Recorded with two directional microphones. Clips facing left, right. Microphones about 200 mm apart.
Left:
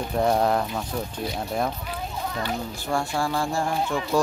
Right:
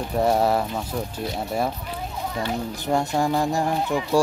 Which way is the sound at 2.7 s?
20° right (ahead or behind).